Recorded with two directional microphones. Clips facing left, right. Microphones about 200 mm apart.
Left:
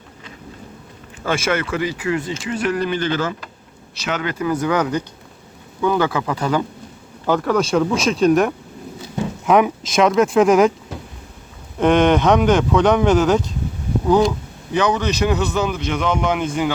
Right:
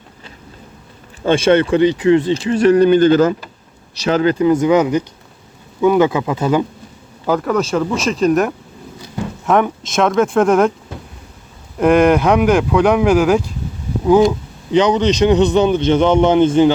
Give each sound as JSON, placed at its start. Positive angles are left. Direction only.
{"t": 1.2, "sound": "speech", "side_deg": -30}
{"t": 4.8, "sound": "speech", "side_deg": -10}
{"t": 7.3, "sound": "speech", "side_deg": 0}
{"t": 14.7, "sound": "speech", "side_deg": -25}